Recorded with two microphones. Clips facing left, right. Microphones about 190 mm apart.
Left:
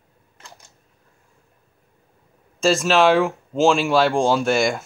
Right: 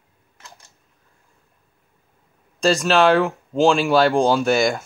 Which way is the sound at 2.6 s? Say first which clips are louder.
Even; centre (ahead or behind).